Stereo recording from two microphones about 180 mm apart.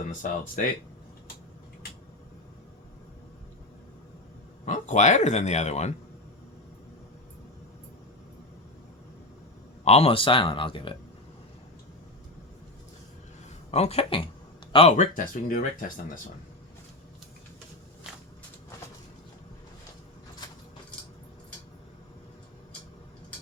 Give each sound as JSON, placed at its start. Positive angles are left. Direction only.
{"t": 0.1, "sound": "speech", "side_deg": 45}
{"t": 4.6, "sound": "speech", "side_deg": 40}
{"t": 9.8, "sound": "speech", "side_deg": 35}
{"t": 13.7, "sound": "speech", "side_deg": 35}
{"t": 14.9, "sound": "speech", "side_deg": 50}